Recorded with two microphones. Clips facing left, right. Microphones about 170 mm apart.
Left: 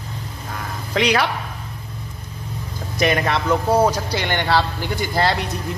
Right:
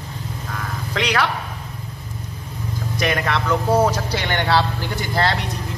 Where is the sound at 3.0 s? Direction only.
25° left (ahead or behind).